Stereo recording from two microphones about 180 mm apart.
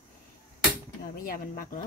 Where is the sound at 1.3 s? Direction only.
50° left (ahead or behind).